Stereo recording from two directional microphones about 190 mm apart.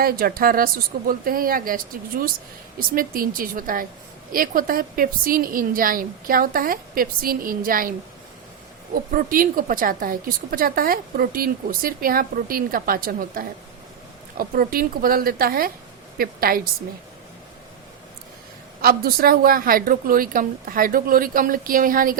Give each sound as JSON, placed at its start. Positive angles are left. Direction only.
{"t": 0.0, "sound": "a woman's voice", "side_deg": -50}
{"t": 9.1, "sound": "a woman's voice", "side_deg": -45}
{"t": 18.8, "sound": "a woman's voice", "side_deg": -50}